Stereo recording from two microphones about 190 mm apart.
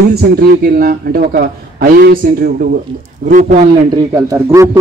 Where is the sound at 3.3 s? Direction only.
35° right (ahead or behind).